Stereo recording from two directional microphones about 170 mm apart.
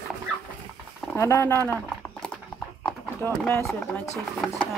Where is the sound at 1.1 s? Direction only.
15° left (ahead or behind).